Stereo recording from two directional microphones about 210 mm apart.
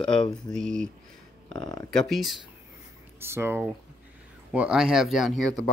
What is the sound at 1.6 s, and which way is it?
Speech, 20° left (ahead or behind).